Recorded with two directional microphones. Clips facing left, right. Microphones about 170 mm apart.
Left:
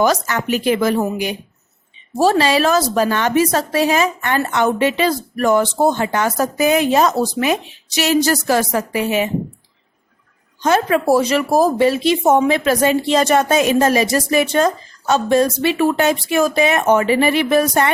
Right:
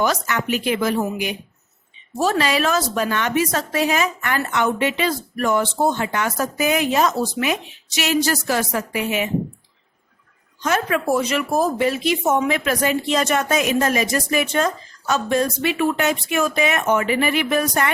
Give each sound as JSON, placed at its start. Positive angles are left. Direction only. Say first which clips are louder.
{"t": 0.0, "sound": "speech", "louder": "left 4 dB", "side_deg": 40}
{"t": 10.6, "sound": "speech", "louder": "left 5 dB", "side_deg": 30}